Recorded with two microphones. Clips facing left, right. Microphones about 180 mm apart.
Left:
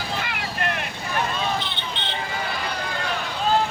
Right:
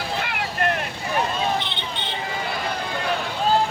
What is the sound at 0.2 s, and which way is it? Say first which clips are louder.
Vehicle: right 3 dB; 55° right (ahead or behind).